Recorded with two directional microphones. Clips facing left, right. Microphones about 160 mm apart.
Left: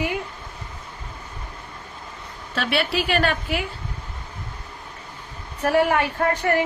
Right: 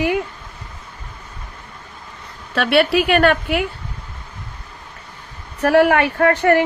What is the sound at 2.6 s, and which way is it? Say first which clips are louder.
Speech: right 8 dB; 65° right (ahead or behind).